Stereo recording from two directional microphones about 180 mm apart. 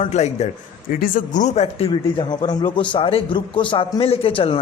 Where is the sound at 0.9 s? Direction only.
50° left (ahead or behind).